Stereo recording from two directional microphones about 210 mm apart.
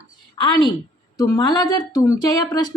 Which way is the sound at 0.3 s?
20° left (ahead or behind).